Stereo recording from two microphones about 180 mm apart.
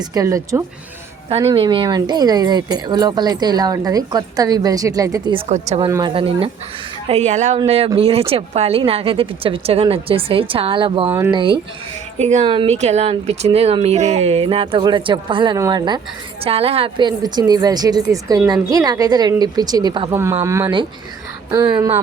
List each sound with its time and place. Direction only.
0.0 s speech: 20° right (ahead or behind)
1.5 s speech: 30° right (ahead or behind)
5.5 s speech: 40° right (ahead or behind)
5.9 s speech: 25° right (ahead or behind)
12.2 s speech: 40° right (ahead or behind); by 21.9 s 10° right (ahead or behind)